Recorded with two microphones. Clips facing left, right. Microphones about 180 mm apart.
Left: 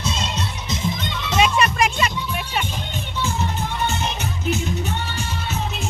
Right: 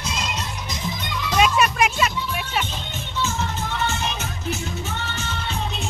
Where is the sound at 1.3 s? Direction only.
Centre (ahead or behind).